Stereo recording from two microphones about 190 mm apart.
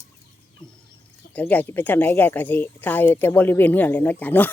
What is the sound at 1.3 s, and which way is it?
Speech, 10° left (ahead or behind).